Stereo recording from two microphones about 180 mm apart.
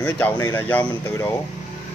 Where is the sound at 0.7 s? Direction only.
10° left (ahead or behind).